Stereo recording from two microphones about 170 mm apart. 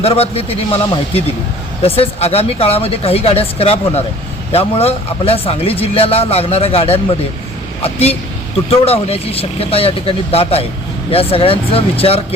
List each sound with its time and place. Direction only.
0.0 s speech: 35° left (ahead or behind)
1.8 s speech: 35° left (ahead or behind)